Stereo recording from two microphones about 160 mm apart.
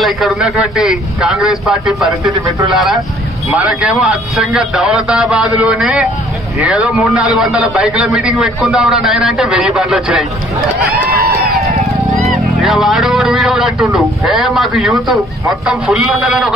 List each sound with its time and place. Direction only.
0.0 s a man's voice: centre (ahead or behind)
11.6 s a sound: 45° right (ahead or behind)
12.1 s vehicle: centre (ahead or behind)
13.9 s a man's voice: centre (ahead or behind)